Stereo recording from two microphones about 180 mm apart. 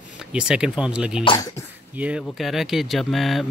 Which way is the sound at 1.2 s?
30° left (ahead or behind).